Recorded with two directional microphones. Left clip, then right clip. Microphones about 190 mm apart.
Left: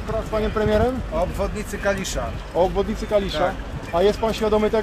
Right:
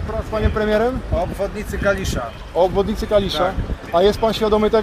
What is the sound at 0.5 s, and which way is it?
Speech, 30° right (ahead or behind).